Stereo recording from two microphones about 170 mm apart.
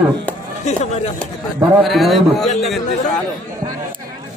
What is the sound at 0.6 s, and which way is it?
Speech, 40° left (ahead or behind).